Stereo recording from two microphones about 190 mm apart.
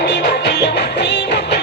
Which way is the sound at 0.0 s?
65° left (ahead or behind).